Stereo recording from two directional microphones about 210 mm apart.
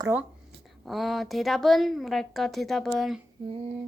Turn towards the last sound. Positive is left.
turn(degrees=0)  # may be behind; listen again after turning